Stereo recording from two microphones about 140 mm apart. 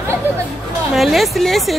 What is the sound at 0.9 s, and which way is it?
Speech, centre (ahead or behind).